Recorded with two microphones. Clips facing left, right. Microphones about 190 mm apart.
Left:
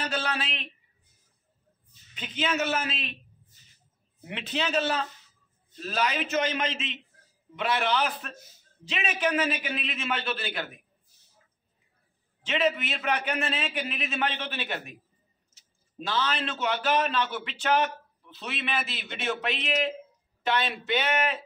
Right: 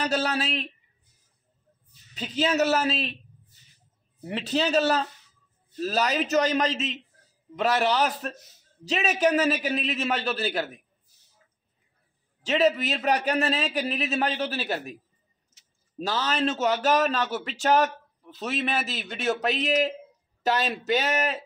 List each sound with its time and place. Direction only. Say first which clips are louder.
0.0 s a man's voice: right 5 dB; 40° right (ahead or behind)
2.1 s a man's voice: right 5 dB; 40° right (ahead or behind)
4.2 s a man's voice: right 5 dB; 35° right (ahead or behind)
12.4 s a man's voice: right 4 dB; 40° right (ahead or behind)
16.0 s a man's voice: right 3 dB; 40° right (ahead or behind)